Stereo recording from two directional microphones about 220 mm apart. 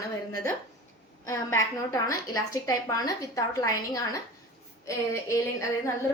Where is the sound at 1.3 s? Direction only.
15° left (ahead or behind).